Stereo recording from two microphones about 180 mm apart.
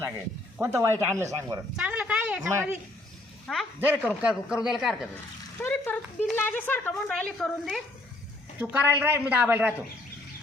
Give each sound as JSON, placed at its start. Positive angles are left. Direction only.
{"t": 0.6, "sound": "a woman's voice", "side_deg": -15}
{"t": 1.7, "sound": "a man's voice", "side_deg": -5}
{"t": 3.8, "sound": "a woman's voice", "side_deg": -10}
{"t": 5.5, "sound": "speech", "side_deg": 10}
{"t": 8.5, "sound": "a woman's voice", "side_deg": -10}